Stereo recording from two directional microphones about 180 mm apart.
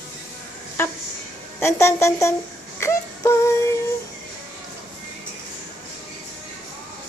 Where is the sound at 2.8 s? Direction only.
15° left (ahead or behind).